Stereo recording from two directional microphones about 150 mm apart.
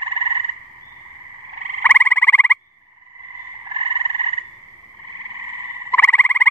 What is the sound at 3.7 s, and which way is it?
Frog, 35° right (ahead or behind).